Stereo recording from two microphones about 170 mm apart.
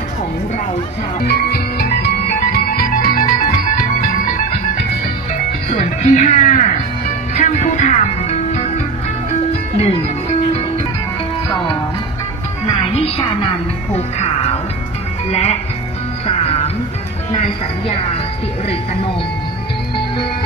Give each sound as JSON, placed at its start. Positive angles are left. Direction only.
{"t": 1.2, "sound": "music", "side_deg": 65}
{"t": 5.7, "sound": "speech", "side_deg": 45}
{"t": 7.3, "sound": "music", "side_deg": 45}
{"t": 12.6, "sound": "music", "side_deg": 35}
{"t": 16.3, "sound": "music", "side_deg": 35}